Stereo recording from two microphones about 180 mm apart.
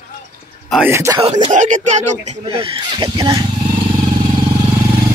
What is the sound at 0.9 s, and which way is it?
Speech, 15° right (ahead or behind).